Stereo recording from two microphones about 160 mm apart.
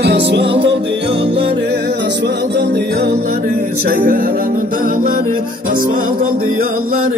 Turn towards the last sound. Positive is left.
turn(degrees=-60)  # may be behind; listen again after turning